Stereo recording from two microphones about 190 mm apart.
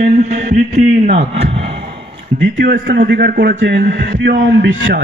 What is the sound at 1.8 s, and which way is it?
A man's voice, 60° right (ahead or behind).